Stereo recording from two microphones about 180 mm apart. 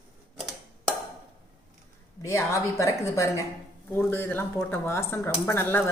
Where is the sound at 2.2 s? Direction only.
15° left (ahead or behind).